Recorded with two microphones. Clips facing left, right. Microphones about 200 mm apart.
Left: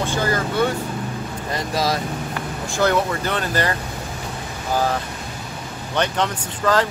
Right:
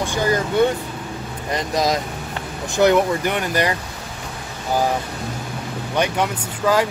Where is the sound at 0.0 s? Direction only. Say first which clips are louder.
Right 2 dB; 15° right (ahead or behind).